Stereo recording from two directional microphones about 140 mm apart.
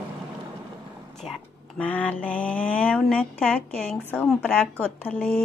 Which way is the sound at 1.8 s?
10° left (ahead or behind).